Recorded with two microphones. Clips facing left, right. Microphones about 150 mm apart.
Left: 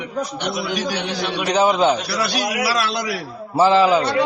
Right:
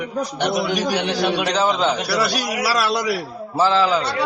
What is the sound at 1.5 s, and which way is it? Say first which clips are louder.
Speech: left 3 dB; 15° left (ahead or behind).